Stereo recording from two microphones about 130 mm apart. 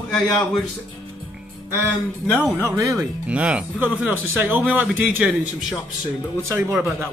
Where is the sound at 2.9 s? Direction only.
5° right (ahead or behind).